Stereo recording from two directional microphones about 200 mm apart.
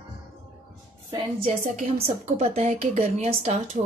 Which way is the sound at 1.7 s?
35° right (ahead or behind).